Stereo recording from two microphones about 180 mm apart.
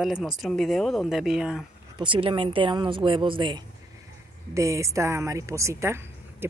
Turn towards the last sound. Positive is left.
turn(degrees=-15)  # may be behind; listen again after turning